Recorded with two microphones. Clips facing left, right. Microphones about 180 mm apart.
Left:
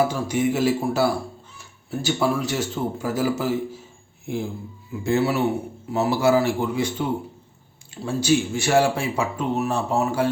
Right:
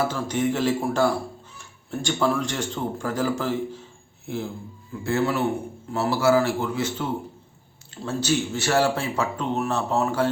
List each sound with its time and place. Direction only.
0.0 s speech: 10° left (ahead or behind)